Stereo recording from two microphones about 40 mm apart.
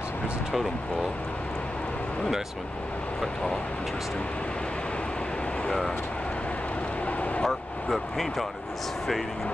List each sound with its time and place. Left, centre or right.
5.7 s speech: centre
7.1 s vehicle: left
7.4 s speech: centre